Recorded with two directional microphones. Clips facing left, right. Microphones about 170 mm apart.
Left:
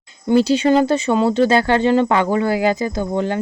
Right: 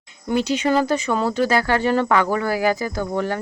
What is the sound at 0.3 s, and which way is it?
Speech, 30° left (ahead or behind).